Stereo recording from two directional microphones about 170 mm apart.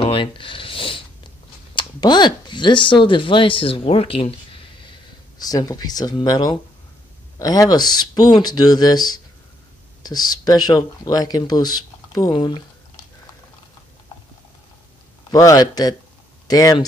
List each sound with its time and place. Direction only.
0.0 s a sound: 30° left (ahead or behind)
1.8 s speech: 25° left (ahead or behind)
5.4 s speech: 20° left (ahead or behind)
15.3 s speech: 20° left (ahead or behind)